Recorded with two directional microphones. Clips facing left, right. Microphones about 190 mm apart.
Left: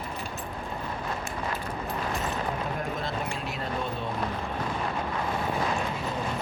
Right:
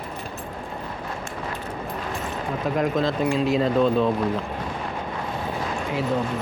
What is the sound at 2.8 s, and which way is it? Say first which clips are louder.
Speech: right 10 dB; 90° right.